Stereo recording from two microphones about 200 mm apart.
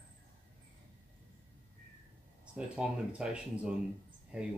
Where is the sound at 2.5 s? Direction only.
5° right (ahead or behind).